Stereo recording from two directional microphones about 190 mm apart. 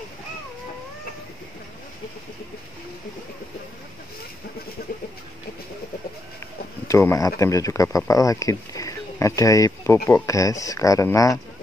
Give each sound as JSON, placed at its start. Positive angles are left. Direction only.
{"t": 6.9, "sound": "speech", "side_deg": 15}